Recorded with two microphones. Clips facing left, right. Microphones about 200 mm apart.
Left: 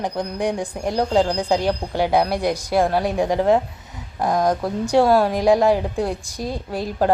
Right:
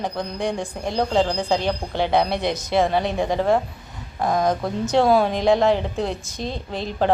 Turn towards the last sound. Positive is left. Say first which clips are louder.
# left 2 dB
turn(degrees=10)  # may be behind; listen again after turning